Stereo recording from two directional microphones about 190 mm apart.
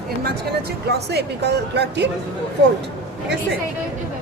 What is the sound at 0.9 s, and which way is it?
Speech, 60° right (ahead or behind).